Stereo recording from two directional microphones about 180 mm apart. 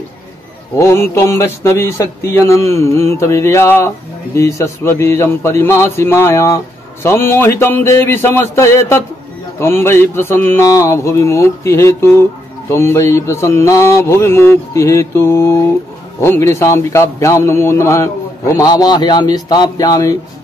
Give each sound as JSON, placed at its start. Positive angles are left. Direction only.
{"t": 0.7, "sound": "mantra", "side_deg": 15}